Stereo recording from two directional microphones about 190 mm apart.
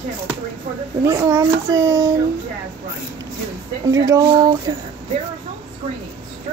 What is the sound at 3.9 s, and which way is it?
Speech, 15° right (ahead or behind).